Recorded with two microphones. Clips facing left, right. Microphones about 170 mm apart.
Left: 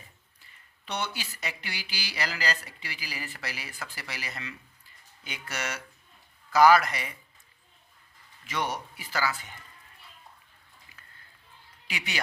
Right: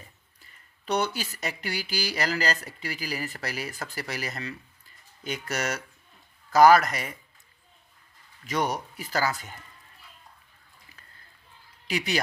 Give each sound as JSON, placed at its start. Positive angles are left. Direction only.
{"t": 0.9, "sound": "speech", "side_deg": -40}
{"t": 8.4, "sound": "speech", "side_deg": -40}
{"t": 11.9, "sound": "speech", "side_deg": -40}